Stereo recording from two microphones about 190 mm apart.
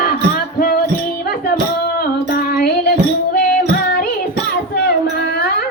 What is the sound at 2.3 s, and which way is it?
Music, 55° left (ahead or behind).